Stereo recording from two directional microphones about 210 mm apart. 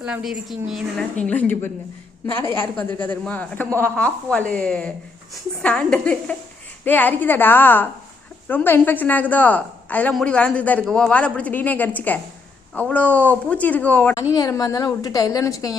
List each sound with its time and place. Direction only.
0.0 s a woman's voice: 5° right (ahead or behind); by 15.8 s 15° left (ahead or behind)